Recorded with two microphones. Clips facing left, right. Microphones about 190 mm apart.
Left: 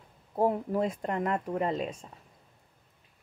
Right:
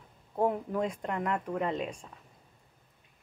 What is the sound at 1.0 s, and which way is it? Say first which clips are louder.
Speech: left 2 dB; 35° left (ahead or behind).